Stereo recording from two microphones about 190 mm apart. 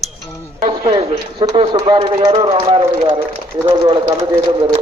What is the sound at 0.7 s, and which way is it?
A man's voice, 25° right (ahead or behind).